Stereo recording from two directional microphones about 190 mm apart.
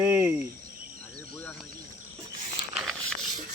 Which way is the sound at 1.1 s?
5° left (ahead or behind).